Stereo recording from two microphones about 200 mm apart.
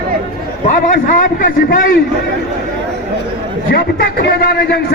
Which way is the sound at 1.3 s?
45° left (ahead or behind).